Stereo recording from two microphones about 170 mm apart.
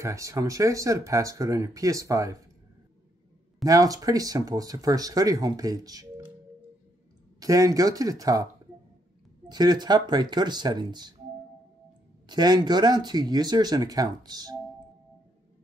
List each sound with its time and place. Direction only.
0.0 s speech: 20° right (ahead or behind)
3.6 s speech: 20° right (ahead or behind)
7.3 s speech: 20° right (ahead or behind)
9.5 s speech: 25° right (ahead or behind)
12.3 s speech: 25° right (ahead or behind)